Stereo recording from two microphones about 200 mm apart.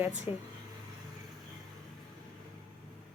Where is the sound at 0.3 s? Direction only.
25° left (ahead or behind).